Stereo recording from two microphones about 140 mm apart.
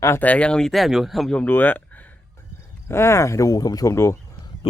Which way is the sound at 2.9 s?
20° left (ahead or behind).